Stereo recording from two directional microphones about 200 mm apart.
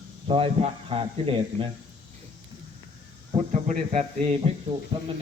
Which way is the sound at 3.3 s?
35° right (ahead or behind).